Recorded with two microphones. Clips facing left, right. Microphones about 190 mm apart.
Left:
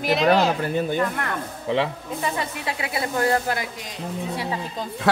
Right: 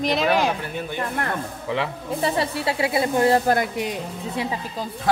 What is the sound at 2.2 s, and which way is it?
Speech, 35° right (ahead or behind).